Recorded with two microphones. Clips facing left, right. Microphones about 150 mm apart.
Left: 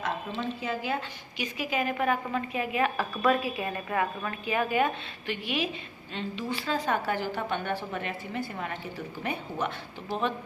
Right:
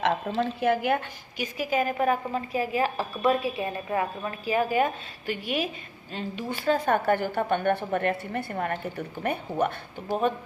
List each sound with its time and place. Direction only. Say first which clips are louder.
0.3 s a woman's voice: right 7 dB; 70° right (ahead or behind); by 10.3 s 45° right (ahead or behind)